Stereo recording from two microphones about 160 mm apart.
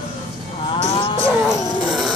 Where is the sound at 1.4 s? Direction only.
Centre (ahead or behind).